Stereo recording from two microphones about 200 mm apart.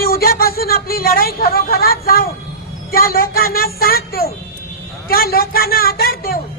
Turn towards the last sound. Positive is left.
turn(degrees=50)  # may be behind; listen again after turning